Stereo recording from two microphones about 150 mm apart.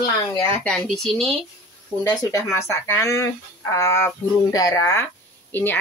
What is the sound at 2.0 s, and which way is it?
Speech, 20° left (ahead or behind).